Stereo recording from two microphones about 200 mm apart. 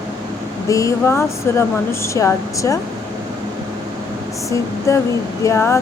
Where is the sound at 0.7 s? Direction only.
15° left (ahead or behind).